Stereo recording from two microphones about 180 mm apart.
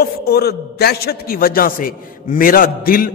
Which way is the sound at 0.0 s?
60° left (ahead or behind).